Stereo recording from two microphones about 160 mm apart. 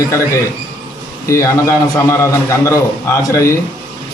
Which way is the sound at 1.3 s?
15° left (ahead or behind).